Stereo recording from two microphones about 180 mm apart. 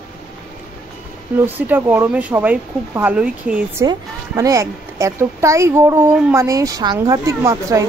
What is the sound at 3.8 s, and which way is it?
A woman's voice, 20° right (ahead or behind).